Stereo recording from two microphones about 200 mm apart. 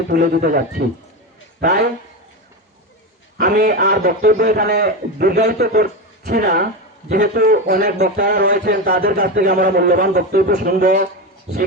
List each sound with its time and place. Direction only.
0.1 s a man's voice: 50° right (ahead or behind)
3.3 s a man's voice: 45° right (ahead or behind)